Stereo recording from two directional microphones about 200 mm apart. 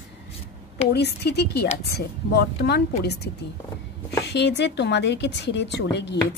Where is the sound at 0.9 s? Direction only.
55° left (ahead or behind).